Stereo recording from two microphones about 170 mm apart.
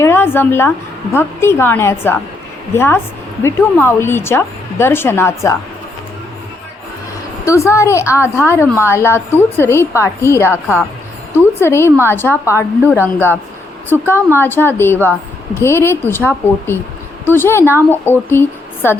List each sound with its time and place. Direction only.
0.0 s a woman's voice: 15° left (ahead or behind)
7.4 s a woman's voice: 15° left (ahead or behind)
13.9 s a woman's voice: 10° left (ahead or behind)